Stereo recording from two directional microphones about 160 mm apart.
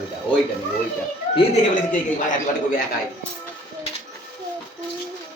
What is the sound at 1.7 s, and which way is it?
Speech, 55° left (ahead or behind).